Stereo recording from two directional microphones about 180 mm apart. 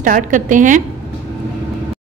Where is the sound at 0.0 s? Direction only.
45° right (ahead or behind).